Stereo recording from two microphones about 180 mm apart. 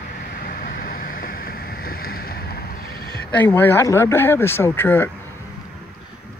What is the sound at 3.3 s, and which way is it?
Speech, 10° left (ahead or behind).